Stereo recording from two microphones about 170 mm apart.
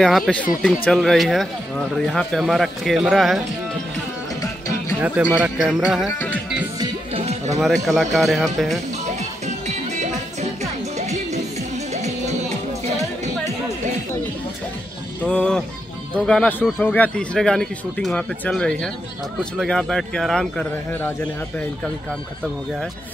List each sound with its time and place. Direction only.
0.0 s speech: centre (ahead or behind)
5.0 s speech: 10° right (ahead or behind)
6.1 s music: 10° left (ahead or behind)
7.2 s music: 40° right (ahead or behind)
7.8 s speech: centre (ahead or behind)
9.7 s music: 40° right (ahead or behind)
15.2 s speech: 5° left (ahead or behind)